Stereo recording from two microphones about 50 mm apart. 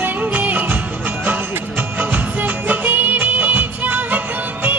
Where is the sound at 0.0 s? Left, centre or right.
Right.